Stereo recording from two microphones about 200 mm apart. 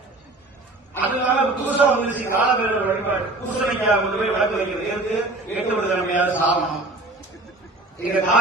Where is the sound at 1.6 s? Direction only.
10° right (ahead or behind).